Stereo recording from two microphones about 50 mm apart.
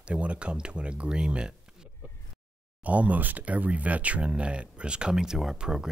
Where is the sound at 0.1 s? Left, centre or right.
Right.